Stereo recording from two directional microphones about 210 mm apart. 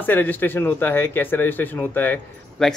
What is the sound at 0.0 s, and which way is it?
A man's voice, 10° left (ahead or behind).